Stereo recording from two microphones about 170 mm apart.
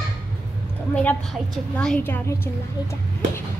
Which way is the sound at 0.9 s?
10° left (ahead or behind).